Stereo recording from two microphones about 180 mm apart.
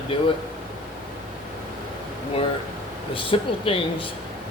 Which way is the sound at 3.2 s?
30° left (ahead or behind).